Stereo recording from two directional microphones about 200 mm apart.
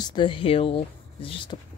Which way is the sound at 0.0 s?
25° left (ahead or behind).